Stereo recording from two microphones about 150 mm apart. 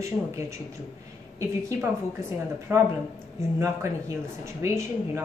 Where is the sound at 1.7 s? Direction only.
15° right (ahead or behind).